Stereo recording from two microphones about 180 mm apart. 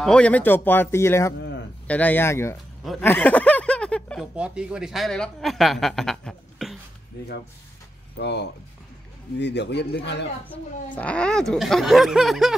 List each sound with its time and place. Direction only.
0.0 s speech: 5° left (ahead or behind)
4.4 s speech: 5° right (ahead or behind)
8.2 s a man's voice: 70° left (ahead or behind)
11.0 s speech: 5° left (ahead or behind)